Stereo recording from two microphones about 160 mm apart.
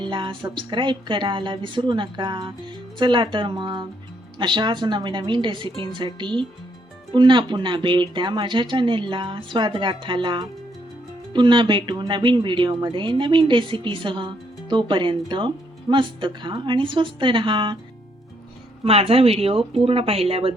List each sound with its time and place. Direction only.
0.0 s speech: 30° right (ahead or behind)
18.9 s speech: 35° right (ahead or behind)